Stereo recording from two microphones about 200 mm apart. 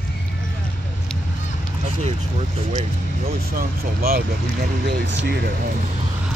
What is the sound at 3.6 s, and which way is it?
Speech, 45° right (ahead or behind).